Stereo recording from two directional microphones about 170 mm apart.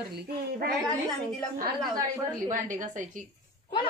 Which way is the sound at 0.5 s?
65° right (ahead or behind).